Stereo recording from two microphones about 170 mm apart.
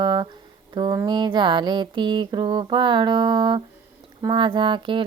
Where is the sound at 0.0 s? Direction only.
25° right (ahead or behind).